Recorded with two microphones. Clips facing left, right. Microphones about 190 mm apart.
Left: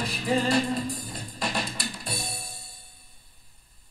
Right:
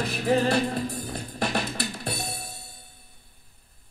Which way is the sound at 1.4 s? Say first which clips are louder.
Right 3 dB; 60° right (ahead or behind).